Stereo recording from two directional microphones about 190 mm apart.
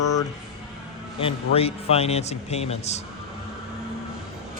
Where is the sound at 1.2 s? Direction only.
30° left (ahead or behind).